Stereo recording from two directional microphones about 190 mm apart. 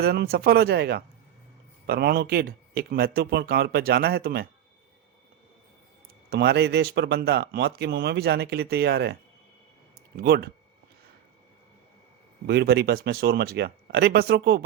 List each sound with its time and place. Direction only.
0.0 s speech: 55° right (ahead or behind)
6.3 s speech: 60° right (ahead or behind)
10.2 s speech: 55° right (ahead or behind)
12.5 s speech: 60° right (ahead or behind)